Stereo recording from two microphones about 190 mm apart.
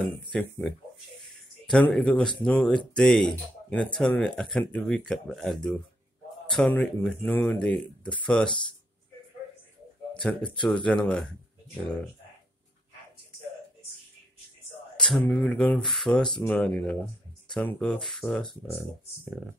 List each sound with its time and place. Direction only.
0.0 s speech: 10° left (ahead or behind)
10.5 s speech: 5° left (ahead or behind)
15.0 s speech: 5° left (ahead or behind)